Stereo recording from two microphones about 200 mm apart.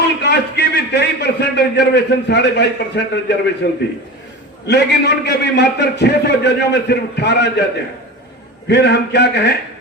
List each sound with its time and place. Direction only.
0.2 s a man's voice: 55° left (ahead or behind)
8.6 s a man's voice: 55° left (ahead or behind)